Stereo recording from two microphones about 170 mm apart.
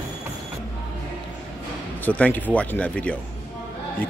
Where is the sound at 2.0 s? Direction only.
10° left (ahead or behind).